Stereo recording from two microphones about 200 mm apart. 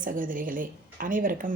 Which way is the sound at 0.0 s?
45° right (ahead or behind).